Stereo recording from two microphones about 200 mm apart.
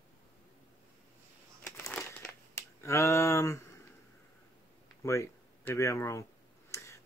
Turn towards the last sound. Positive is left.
turn(degrees=15)  # may be behind; listen again after turning